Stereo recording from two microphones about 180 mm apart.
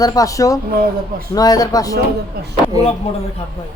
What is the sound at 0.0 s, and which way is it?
A man's voice, 20° left (ahead or behind).